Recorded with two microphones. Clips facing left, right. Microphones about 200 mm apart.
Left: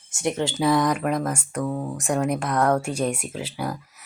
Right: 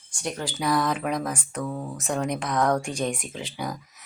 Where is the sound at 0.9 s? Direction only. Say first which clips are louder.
Left 3 dB; centre (ahead or behind).